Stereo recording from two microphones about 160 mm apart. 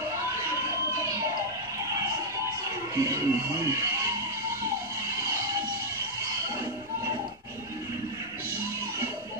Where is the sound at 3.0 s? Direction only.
20° right (ahead or behind).